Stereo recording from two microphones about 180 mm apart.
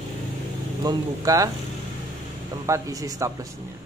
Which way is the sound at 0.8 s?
20° right (ahead or behind).